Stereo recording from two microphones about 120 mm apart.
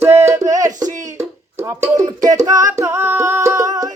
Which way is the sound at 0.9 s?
90° right.